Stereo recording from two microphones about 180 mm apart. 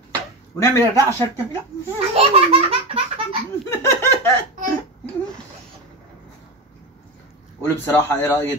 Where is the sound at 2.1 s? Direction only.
35° right (ahead or behind).